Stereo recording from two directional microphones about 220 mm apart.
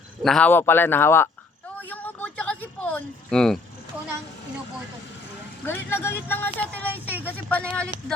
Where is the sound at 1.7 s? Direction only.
5° left (ahead or behind).